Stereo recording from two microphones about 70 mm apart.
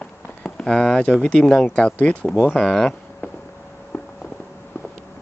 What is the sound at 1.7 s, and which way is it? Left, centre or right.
Speech, centre.